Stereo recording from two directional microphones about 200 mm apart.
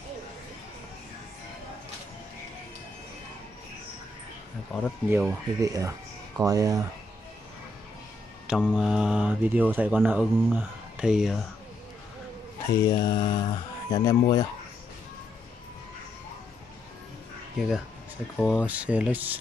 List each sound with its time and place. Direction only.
4.7 s speech: centre (ahead or behind)
5.1 s speech: 15° right (ahead or behind)
8.5 s speech: 5° right (ahead or behind)
12.6 s speech: 20° left (ahead or behind)
17.6 s speech: centre (ahead or behind)